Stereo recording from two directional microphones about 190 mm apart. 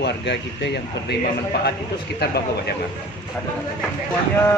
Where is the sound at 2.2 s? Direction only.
60° left (ahead or behind).